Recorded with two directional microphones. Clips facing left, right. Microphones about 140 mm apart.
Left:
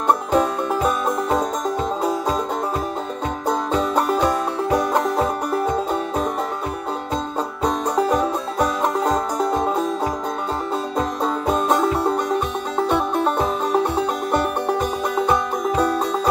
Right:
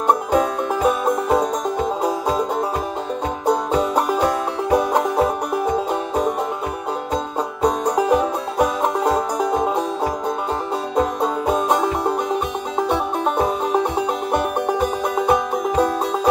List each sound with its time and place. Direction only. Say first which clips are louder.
0.3 s music: even; 10° right (ahead or behind)
3.4 s music: right 3 dB; 10° right (ahead or behind)
7.6 s music: right 2 dB; 15° right (ahead or behind)
11.0 s music: right 5 dB; 10° right (ahead or behind)